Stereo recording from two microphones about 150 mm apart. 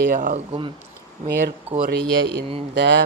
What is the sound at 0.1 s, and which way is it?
Speech, 60° right (ahead or behind).